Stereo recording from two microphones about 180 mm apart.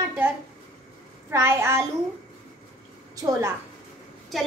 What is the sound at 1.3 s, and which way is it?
Speech, 15° right (ahead or behind).